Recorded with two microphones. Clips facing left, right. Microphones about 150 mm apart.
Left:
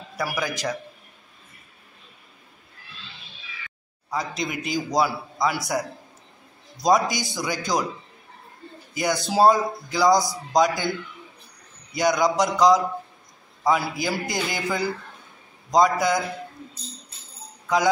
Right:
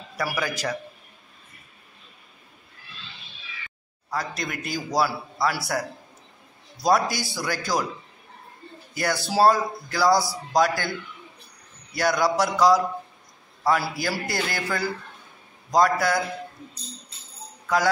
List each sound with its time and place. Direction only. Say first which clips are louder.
0.2 s a man's voice: even; 15° left (ahead or behind)
4.1 s a man's voice: left 2 dB; 15° left (ahead or behind)
8.9 s a man's voice: left 1 dB; 15° left (ahead or behind)
11.9 s a man's voice: left 2 dB; 15° left (ahead or behind)